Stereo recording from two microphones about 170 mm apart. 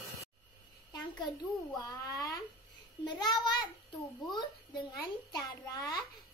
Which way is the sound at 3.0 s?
25° left (ahead or behind).